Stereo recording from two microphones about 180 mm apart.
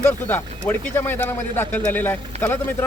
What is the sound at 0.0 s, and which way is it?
Speech, 10° left (ahead or behind).